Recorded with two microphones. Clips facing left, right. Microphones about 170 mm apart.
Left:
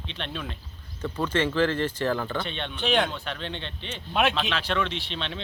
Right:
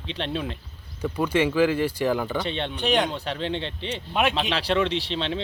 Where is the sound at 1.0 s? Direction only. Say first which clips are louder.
Right 3 dB; 10° right (ahead or behind).